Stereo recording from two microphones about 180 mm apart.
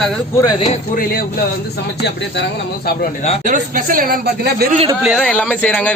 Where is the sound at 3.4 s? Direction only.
50° right (ahead or behind).